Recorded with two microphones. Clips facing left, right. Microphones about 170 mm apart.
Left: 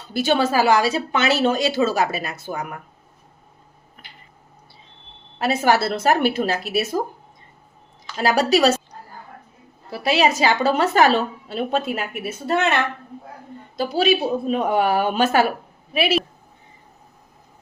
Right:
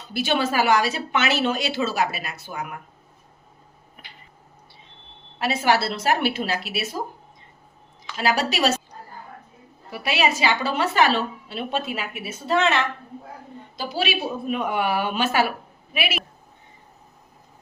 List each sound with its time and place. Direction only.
0.1 s speech: 40° left (ahead or behind)
5.4 s a woman's voice: 45° left (ahead or behind)
8.2 s speech: 40° left (ahead or behind)
9.9 s a woman's voice: 35° left (ahead or behind); by 12.8 s 55° left (ahead or behind)
13.9 s speech: 40° left (ahead or behind)